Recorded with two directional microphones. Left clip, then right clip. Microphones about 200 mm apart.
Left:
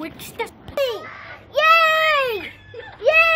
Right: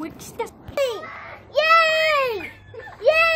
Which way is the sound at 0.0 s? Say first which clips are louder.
Left 1 dB; 20° left (ahead or behind).